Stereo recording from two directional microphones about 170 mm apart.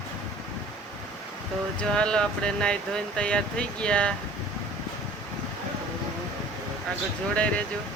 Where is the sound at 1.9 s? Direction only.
5° left (ahead or behind).